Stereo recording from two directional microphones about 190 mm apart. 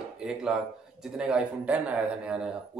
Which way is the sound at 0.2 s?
5° right (ahead or behind).